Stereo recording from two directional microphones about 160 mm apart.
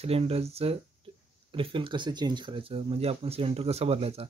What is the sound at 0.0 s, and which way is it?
Speech, 40° right (ahead or behind).